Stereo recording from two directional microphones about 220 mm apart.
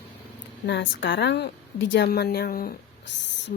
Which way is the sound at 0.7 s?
55° left (ahead or behind).